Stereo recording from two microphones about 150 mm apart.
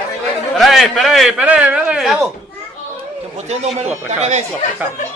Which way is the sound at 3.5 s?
45° right (ahead or behind).